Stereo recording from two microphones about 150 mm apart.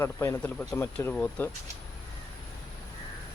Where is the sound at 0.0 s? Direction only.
20° left (ahead or behind).